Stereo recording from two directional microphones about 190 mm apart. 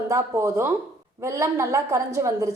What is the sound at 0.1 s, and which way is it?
A woman's voice, 15° right (ahead or behind).